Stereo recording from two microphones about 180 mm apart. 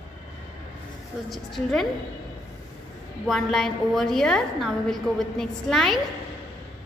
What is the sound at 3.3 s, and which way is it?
A woman's voice, centre (ahead or behind).